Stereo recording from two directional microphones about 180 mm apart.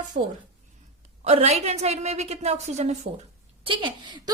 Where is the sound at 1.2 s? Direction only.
35° right (ahead or behind).